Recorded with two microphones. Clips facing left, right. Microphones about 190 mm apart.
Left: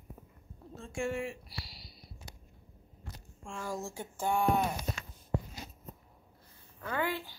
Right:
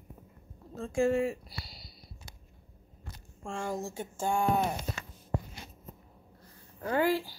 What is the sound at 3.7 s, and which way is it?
Speech, 20° right (ahead or behind).